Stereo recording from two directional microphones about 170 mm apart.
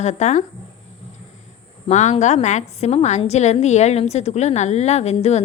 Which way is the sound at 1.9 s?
40° left (ahead or behind).